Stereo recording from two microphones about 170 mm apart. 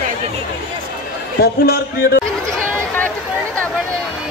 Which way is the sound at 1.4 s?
60° left (ahead or behind).